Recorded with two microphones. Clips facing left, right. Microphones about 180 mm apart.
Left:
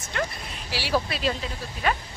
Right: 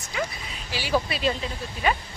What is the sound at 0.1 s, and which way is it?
Speech, centre (ahead or behind).